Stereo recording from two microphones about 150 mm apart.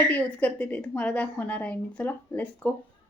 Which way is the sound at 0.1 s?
10° left (ahead or behind).